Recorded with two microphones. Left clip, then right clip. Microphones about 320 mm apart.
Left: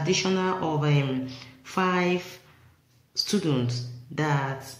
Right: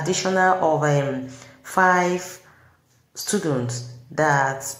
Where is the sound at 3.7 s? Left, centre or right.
Centre.